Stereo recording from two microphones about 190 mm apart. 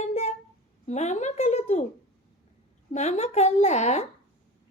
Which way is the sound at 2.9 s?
35° left (ahead or behind).